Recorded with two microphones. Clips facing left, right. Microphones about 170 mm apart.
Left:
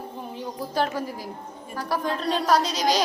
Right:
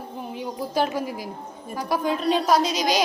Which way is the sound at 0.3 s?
15° right (ahead or behind).